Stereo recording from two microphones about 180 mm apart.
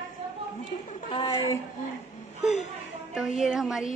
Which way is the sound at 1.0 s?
25° left (ahead or behind).